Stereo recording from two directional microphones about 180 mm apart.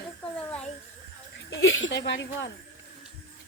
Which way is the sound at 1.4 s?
90° left.